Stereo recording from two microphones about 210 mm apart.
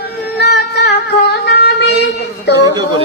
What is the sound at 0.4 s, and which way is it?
Music, 55° left (ahead or behind).